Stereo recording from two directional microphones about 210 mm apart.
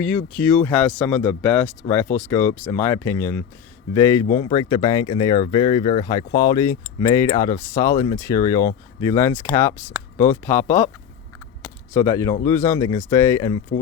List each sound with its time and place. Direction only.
0.0 s speech: 5° left (ahead or behind)
11.9 s speech: 15° left (ahead or behind)